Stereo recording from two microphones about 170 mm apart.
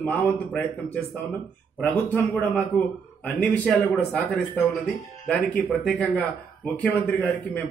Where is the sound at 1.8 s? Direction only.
5° left (ahead or behind).